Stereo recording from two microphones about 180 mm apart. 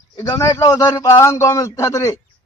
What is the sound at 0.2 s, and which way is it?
A man's voice, 20° left (ahead or behind).